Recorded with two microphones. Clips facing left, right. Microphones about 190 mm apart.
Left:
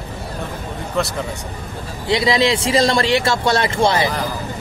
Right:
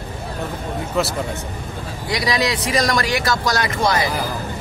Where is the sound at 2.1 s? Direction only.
25° left (ahead or behind).